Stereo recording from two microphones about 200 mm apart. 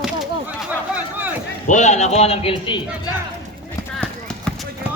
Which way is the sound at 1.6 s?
35° left (ahead or behind).